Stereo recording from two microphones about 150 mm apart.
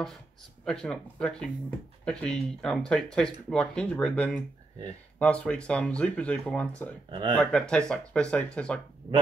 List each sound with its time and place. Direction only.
0.7 s speech: 5° left (ahead or behind)
7.1 s speech: 35° right (ahead or behind)
7.3 s speech: 5° left (ahead or behind)